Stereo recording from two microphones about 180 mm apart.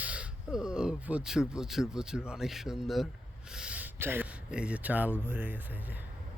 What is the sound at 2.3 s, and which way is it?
Speech, centre (ahead or behind).